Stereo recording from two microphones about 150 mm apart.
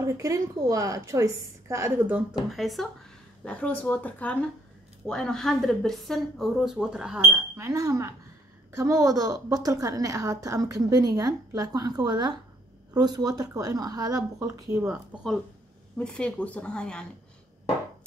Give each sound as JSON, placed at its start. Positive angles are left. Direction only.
{"t": 0.0, "sound": "a woman's voice", "side_deg": -20}
{"t": 2.5, "sound": "speech", "side_deg": 0}
{"t": 7.5, "sound": "a woman's voice", "side_deg": -20}
{"t": 16.0, "sound": "speech", "side_deg": 5}